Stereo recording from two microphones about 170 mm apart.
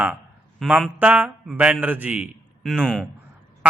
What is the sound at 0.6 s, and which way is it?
Speech, 5° right (ahead or behind).